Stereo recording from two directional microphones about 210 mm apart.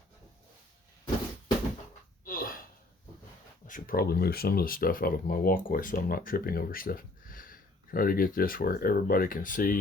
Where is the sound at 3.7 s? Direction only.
40° left (ahead or behind).